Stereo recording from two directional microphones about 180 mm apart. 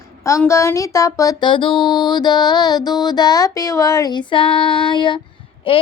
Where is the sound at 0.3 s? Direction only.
15° left (ahead or behind).